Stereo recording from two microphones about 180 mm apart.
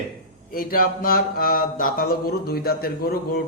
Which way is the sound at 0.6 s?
55° left (ahead or behind).